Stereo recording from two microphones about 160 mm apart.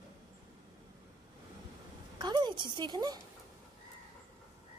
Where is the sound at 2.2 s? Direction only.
30° right (ahead or behind).